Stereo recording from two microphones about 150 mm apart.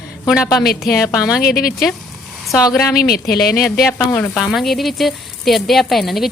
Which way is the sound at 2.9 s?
90° left.